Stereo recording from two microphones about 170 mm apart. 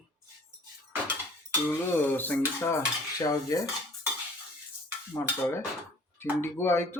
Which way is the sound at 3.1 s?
20° left (ahead or behind).